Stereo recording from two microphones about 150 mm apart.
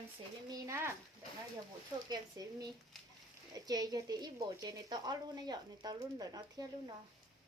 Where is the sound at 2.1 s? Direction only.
25° right (ahead or behind).